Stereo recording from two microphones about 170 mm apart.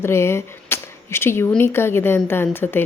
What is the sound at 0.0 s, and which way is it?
Speech, 15° left (ahead or behind).